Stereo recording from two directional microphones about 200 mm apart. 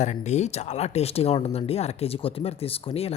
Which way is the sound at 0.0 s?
35° left (ahead or behind).